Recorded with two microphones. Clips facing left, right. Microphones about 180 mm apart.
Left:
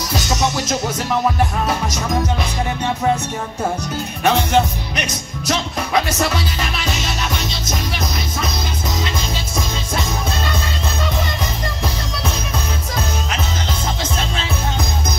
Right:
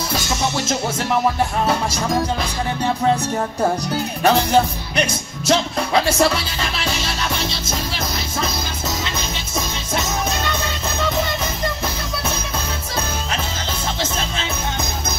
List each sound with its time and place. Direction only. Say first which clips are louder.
0.4 s music: left 1 dB; 25° right (ahead or behind)
4.2 s music: even; 35° right (ahead or behind)